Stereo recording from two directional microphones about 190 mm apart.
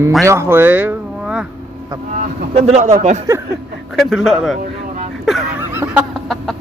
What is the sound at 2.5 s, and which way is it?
Speech, 35° right (ahead or behind).